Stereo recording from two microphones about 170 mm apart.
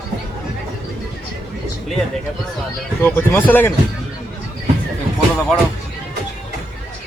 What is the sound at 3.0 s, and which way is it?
Speech, 15° left (ahead or behind).